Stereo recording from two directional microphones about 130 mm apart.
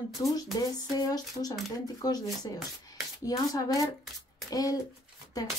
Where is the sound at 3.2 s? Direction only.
25° left (ahead or behind).